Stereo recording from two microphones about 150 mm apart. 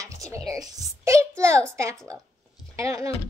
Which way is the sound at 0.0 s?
20° right (ahead or behind).